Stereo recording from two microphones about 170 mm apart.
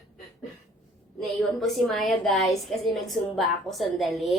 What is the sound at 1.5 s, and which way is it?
A woman's voice, centre (ahead or behind).